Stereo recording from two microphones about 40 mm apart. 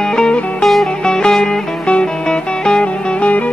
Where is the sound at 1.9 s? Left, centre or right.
Left.